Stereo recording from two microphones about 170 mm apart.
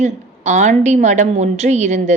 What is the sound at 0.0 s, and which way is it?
A woman's voice, 45° right (ahead or behind).